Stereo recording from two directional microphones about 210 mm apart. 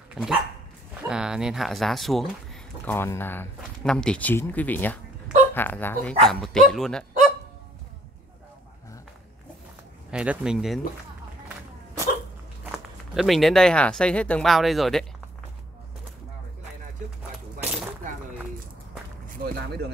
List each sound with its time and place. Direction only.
0.1 s speech: 5° right (ahead or behind)
10.1 s speech: 5° right (ahead or behind)
12.7 s speech: centre (ahead or behind)
19.2 s a sound: 45° right (ahead or behind)